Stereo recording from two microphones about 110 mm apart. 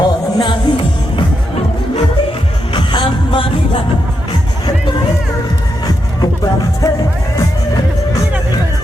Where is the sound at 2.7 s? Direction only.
45° left (ahead or behind).